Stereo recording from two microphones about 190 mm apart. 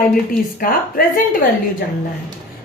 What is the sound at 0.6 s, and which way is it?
Speech, 50° left (ahead or behind).